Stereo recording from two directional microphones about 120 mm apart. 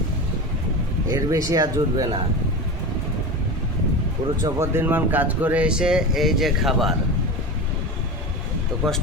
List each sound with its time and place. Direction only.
1.1 s speech: 30° right (ahead or behind)
4.4 s speech: 25° right (ahead or behind); by 6.9 s centre (ahead or behind)
8.7 s speech: 5° left (ahead or behind)